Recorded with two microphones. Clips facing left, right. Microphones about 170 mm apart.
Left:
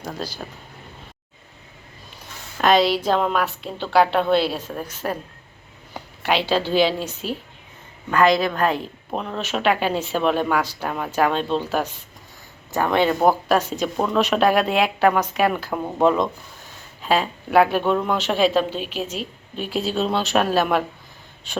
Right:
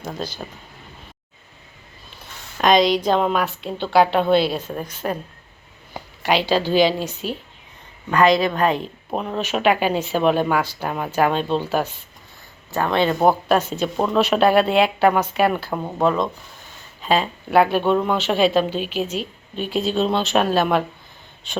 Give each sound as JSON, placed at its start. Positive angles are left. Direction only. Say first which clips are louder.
{"t": 2.7, "sound": "a woman's voice", "louder": "right 2 dB", "side_deg": 5}
{"t": 5.9, "sound": "a sound", "louder": "right 2 dB", "side_deg": 0}
{"t": 8.1, "sound": "a woman's voice", "louder": "right 1 dB", "side_deg": 0}
{"t": 12.7, "sound": "speech", "louder": "even", "side_deg": 10}
{"t": 13.1, "sound": "a woman's voice", "louder": "right 1 dB", "side_deg": 0}
{"t": 13.7, "sound": "speech", "louder": "right 1 dB", "side_deg": 10}
{"t": 13.9, "sound": "a woman's voice", "louder": "right 2 dB", "side_deg": -5}
{"t": 16.0, "sound": "a woman's voice", "louder": "left 2 dB", "side_deg": 15}